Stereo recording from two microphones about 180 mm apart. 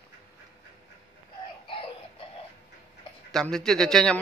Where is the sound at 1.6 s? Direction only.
30° left (ahead or behind).